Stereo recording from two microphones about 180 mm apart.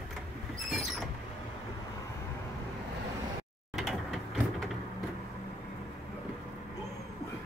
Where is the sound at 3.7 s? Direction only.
Centre (ahead or behind).